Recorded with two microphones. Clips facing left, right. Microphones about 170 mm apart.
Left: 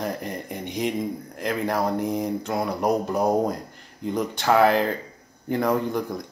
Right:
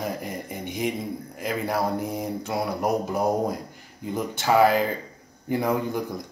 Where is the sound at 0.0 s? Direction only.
Centre (ahead or behind).